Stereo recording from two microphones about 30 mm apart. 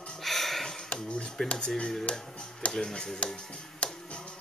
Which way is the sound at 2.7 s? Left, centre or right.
Left.